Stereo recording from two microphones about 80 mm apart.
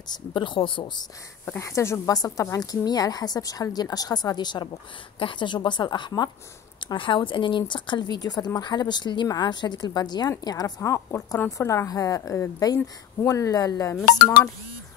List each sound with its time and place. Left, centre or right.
0.1 s speech: left
1.6 s a woman's voice: left
2.1 s a woman's voice: left
5.2 s a woman's voice: left
6.9 s a woman's voice: left
11.5 s a woman's voice: left